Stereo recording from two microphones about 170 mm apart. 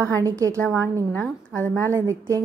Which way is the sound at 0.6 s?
15° left (ahead or behind).